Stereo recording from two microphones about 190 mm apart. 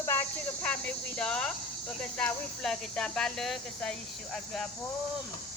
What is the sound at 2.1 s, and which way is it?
Speech, 5° left (ahead or behind).